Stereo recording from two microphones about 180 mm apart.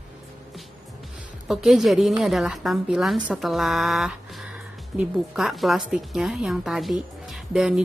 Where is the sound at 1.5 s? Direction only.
Centre (ahead or behind).